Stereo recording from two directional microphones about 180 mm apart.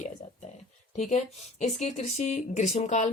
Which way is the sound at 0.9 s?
40° left (ahead or behind).